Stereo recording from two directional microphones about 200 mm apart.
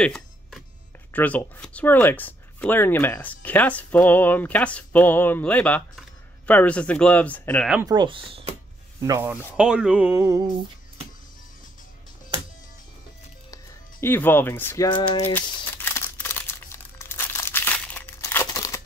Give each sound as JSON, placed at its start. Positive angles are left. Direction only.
{"t": 0.0, "sound": "a sound", "side_deg": 0}
{"t": 1.1, "sound": "speech", "side_deg": 10}
{"t": 7.8, "sound": "speech", "side_deg": -20}
{"t": 9.0, "sound": "speech", "side_deg": -15}
{"t": 14.0, "sound": "speech", "side_deg": 10}
{"t": 14.9, "sound": "a sound", "side_deg": 25}
{"t": 15.3, "sound": "crumpling", "side_deg": 10}